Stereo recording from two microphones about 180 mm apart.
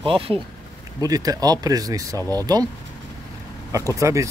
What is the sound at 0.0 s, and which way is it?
Speech, 30° right (ahead or behind).